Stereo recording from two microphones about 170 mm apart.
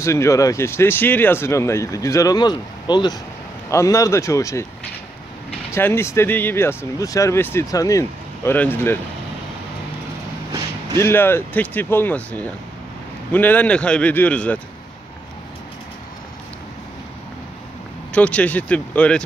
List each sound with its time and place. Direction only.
0.0 s speech: 15° left (ahead or behind)
5.7 s speech: 15° left (ahead or behind)
11.0 s speech: 15° left (ahead or behind)
18.1 s speech: 10° left (ahead or behind)